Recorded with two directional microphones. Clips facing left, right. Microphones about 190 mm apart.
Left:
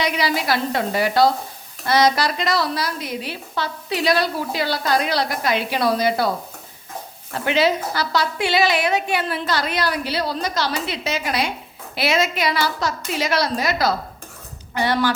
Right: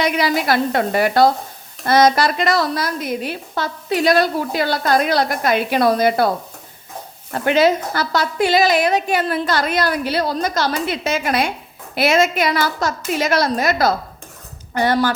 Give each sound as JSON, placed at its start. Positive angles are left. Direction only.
{"t": 0.0, "sound": "a woman's voice", "side_deg": -50}
{"t": 7.4, "sound": "a woman's voice", "side_deg": -50}